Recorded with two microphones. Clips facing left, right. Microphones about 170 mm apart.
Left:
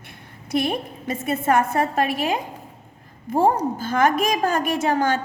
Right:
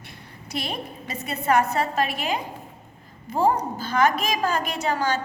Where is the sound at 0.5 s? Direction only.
50° left (ahead or behind).